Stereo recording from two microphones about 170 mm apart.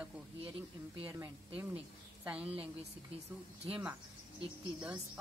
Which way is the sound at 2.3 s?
10° right (ahead or behind).